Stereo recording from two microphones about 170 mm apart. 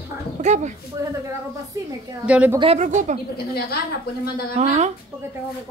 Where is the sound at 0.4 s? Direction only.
45° right (ahead or behind).